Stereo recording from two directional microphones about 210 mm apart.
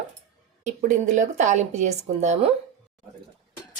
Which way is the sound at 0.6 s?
35° right (ahead or behind).